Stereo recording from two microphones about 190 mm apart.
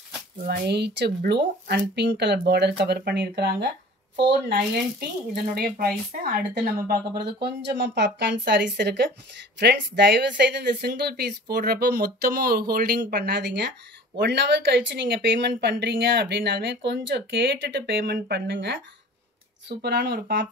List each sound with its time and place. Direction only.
0.5 s a woman's voice: 60° right (ahead or behind)
5.3 s a woman's voice: 55° right (ahead or behind)